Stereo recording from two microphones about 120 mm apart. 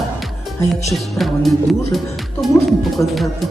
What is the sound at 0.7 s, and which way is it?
Music, centre (ahead or behind).